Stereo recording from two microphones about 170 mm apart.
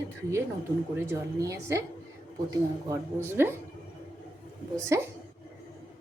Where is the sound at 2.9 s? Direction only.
15° right (ahead or behind).